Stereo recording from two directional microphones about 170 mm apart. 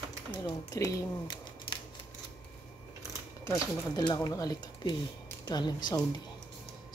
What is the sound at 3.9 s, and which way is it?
Speech, 25° left (ahead or behind).